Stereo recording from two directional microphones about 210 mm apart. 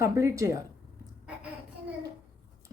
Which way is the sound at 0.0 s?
15° right (ahead or behind).